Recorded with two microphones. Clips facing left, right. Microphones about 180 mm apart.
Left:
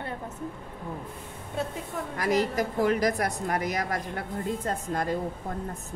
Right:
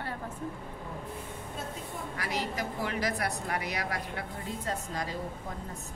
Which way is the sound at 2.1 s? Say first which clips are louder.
Left 10 dB; 45° left (ahead or behind).